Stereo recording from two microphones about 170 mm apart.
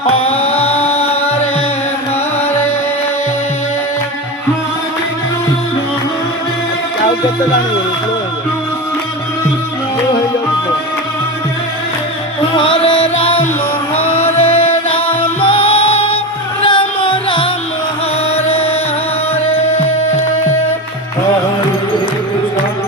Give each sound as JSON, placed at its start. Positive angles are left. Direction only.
{"t": 0.1, "sound": "music", "side_deg": 35}
{"t": 12.5, "sound": "music", "side_deg": 30}
{"t": 14.9, "sound": "music", "side_deg": 10}
{"t": 15.4, "sound": "music", "side_deg": 30}